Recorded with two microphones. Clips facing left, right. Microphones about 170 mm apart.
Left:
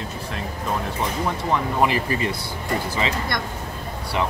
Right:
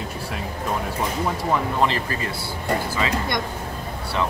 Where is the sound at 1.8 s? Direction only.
15° left (ahead or behind).